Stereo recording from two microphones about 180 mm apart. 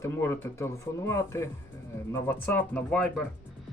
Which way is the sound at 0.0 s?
15° left (ahead or behind).